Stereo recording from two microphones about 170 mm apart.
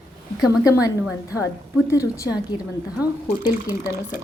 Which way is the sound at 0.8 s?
20° left (ahead or behind).